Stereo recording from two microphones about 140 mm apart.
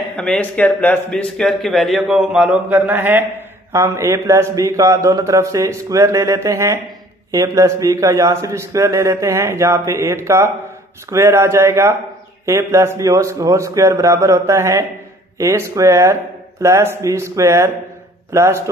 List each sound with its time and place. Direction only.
0.1 s a man's voice: 10° left (ahead or behind); by 18.6 s 20° right (ahead or behind)